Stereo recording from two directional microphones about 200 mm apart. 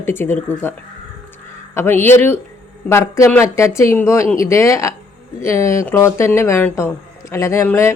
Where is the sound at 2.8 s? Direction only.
15° left (ahead or behind).